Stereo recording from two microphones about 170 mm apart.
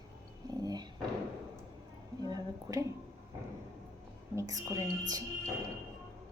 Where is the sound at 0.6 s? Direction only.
25° right (ahead or behind).